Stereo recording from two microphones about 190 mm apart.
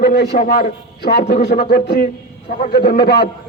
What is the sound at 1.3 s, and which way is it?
Speech, 60° left (ahead or behind).